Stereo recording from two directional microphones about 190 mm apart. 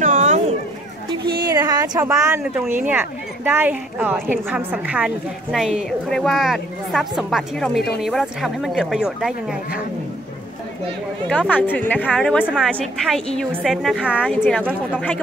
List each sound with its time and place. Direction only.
0.0 s a sound: 40° right (ahead or behind)
1.5 s speech: 20° right (ahead or behind); by 9.6 s 5° right (ahead or behind)
11.2 s a woman's voice: 5° left (ahead or behind)